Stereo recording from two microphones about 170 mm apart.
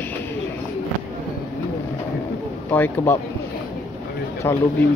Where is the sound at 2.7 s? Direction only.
10° left (ahead or behind).